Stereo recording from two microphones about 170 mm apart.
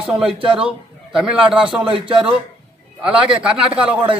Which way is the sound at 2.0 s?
30° right (ahead or behind).